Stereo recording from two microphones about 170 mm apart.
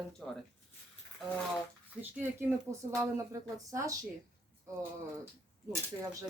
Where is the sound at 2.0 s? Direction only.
10° right (ahead or behind).